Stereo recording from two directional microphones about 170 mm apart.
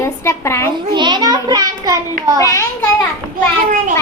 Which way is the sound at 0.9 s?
25° right (ahead or behind).